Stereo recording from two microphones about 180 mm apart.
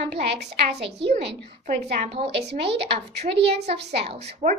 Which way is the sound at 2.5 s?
70° right (ahead or behind).